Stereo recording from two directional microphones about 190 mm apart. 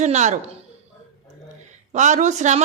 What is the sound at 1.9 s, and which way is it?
Speech, 40° right (ahead or behind).